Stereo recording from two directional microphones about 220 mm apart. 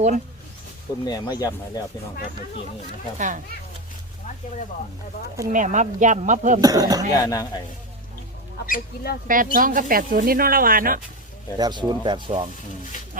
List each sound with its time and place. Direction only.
1.0 s speech: 15° left (ahead or behind)
3.2 s speech: 35° right (ahead or behind)
5.5 s speech: 35° right (ahead or behind)
6.6 s speech: 15° right (ahead or behind)
7.1 s speech: 15° left (ahead or behind)
8.6 s speech: 40° left (ahead or behind)
9.2 s speech: 40° right (ahead or behind)
11.5 s speech: 20° right (ahead or behind)